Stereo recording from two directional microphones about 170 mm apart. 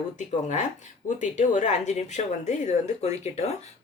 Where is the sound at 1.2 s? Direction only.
45° left (ahead or behind).